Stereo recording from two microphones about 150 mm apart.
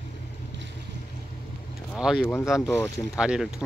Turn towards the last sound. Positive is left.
turn(degrees=-5)  # may be behind; listen again after turning